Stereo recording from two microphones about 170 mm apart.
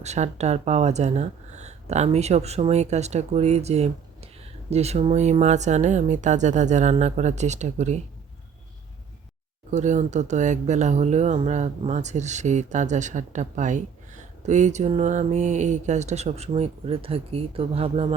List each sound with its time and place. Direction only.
0.0 s speech: 40° right (ahead or behind)
9.7 s speech: 45° right (ahead or behind)